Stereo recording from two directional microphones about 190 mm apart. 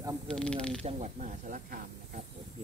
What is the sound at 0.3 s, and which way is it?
Speech, 5° left (ahead or behind).